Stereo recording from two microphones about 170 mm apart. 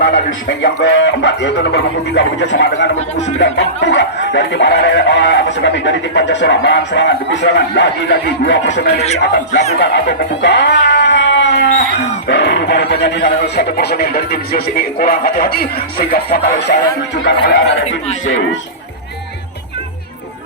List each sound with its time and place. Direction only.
0.0 s chicken: 85° left
9.0 s speech: 40° left (ahead or behind)
9.7 s speech: 90° left; by 16.7 s 70° left (ahead or behind)
17.3 s chicken: 90° left